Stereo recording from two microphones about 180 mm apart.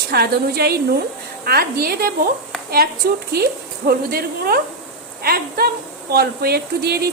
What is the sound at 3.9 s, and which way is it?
Speech, 55° right (ahead or behind).